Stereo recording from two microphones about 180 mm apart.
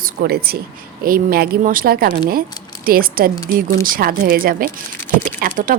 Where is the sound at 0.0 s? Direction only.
60° right (ahead or behind).